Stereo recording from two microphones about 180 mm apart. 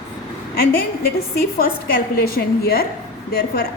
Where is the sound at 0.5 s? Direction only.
55° left (ahead or behind).